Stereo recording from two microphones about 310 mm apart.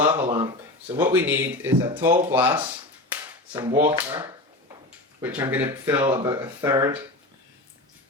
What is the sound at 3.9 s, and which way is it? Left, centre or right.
Speech, centre.